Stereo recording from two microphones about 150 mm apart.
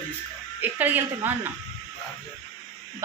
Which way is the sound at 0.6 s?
10° right (ahead or behind).